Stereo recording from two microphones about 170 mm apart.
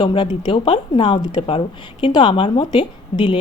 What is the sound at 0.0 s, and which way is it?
Speech, 30° left (ahead or behind).